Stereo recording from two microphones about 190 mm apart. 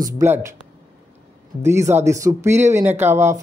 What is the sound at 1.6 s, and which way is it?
Speech, 15° right (ahead or behind).